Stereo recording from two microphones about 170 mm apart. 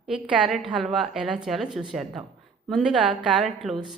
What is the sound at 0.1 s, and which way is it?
A woman's voice, 5° right (ahead or behind).